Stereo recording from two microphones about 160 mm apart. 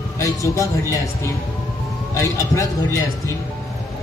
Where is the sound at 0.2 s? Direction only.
20° left (ahead or behind).